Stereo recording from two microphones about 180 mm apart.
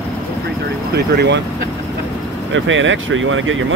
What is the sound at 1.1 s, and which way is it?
Speech, 75° right (ahead or behind).